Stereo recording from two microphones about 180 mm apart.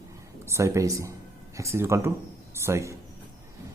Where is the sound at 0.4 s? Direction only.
15° right (ahead or behind).